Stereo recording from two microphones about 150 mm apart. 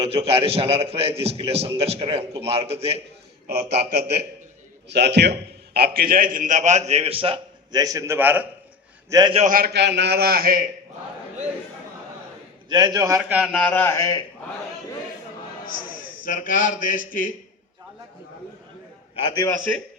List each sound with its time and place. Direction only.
0.0 s a man's voice: 40° right (ahead or behind)
3.4 s a man's voice: 90° right; by 8.4 s 15° right (ahead or behind)
9.0 s a man's voice: 25° right (ahead or behind)
9.3 s a man's voice: 50° right (ahead or behind)
9.6 s a man's voice: 90° right; by 10.7 s 75° right (ahead or behind)
12.6 s a man's voice: 30° right (ahead or behind)
13.2 s speech: 10° right (ahead or behind)
13.5 s a man's voice: 5° left (ahead or behind); by 14.3 s 25° left (ahead or behind)
16.2 s speech: 60° left (ahead or behind)